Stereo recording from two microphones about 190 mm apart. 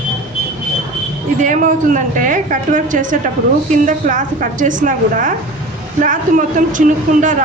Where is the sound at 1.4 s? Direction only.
40° right (ahead or behind).